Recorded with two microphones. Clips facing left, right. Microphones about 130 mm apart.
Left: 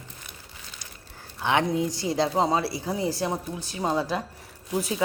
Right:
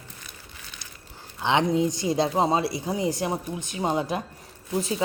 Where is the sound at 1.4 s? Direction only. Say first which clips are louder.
Right 2 dB; 20° right (ahead or behind).